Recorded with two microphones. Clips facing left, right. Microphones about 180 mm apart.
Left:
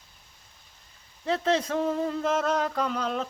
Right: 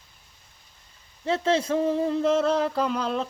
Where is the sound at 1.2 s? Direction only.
30° right (ahead or behind).